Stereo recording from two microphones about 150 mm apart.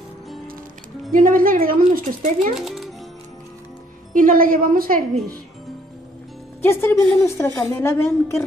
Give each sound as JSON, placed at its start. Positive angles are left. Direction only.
{"t": 1.1, "sound": "a woman's voice", "side_deg": -65}
{"t": 2.5, "sound": "a child's voice", "side_deg": 0}
{"t": 4.1, "sound": "a woman's voice", "side_deg": -65}
{"t": 6.6, "sound": "a woman's voice", "side_deg": 15}